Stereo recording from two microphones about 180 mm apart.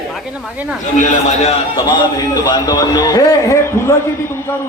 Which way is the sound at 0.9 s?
40° left (ahead or behind).